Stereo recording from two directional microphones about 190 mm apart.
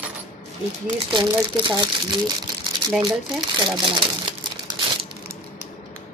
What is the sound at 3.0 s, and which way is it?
Speech, 25° right (ahead or behind).